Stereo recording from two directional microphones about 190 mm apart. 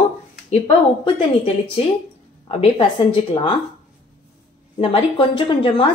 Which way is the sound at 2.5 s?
30° left (ahead or behind).